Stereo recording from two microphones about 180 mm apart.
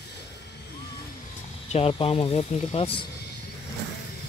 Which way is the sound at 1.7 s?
30° left (ahead or behind).